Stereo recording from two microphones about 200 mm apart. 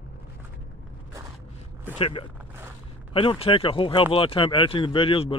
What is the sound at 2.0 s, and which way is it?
Speech, 25° left (ahead or behind).